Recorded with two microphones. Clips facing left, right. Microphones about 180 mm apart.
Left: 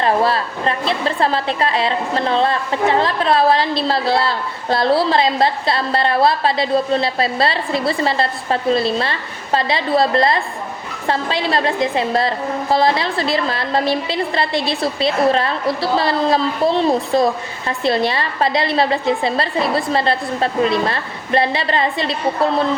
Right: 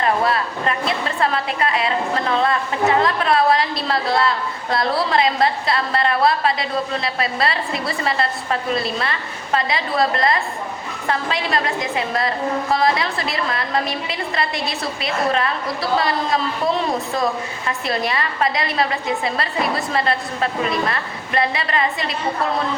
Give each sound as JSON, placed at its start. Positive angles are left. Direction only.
{"t": 0.0, "sound": "a woman's voice", "side_deg": 30}